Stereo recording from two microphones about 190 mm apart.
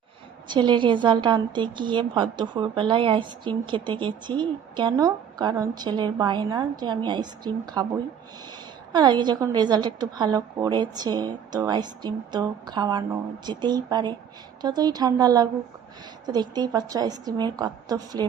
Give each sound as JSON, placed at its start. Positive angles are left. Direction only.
{"t": 0.4, "sound": "a woman's voice", "side_deg": -25}
{"t": 8.9, "sound": "a woman's voice", "side_deg": -25}